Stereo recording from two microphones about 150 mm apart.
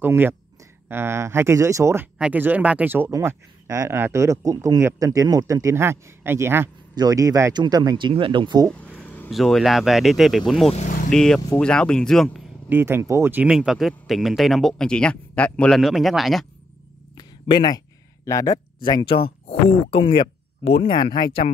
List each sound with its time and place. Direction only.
0.0 s speech: 15° right (ahead or behind)
2.1 s speech: 10° right (ahead or behind); by 8.6 s 30° right (ahead or behind)
8.6 s vehicle: 10° left (ahead or behind)
9.3 s speech: centre (ahead or behind)
12.6 s speech: 15° right (ahead or behind)
17.2 s a sound: 30° left (ahead or behind)
19.4 s speech: 40° left (ahead or behind)